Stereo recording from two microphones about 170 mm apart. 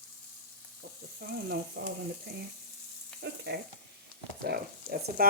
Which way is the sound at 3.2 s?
75° right (ahead or behind).